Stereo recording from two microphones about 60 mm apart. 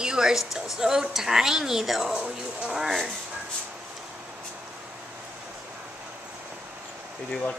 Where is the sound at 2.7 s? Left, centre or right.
Centre.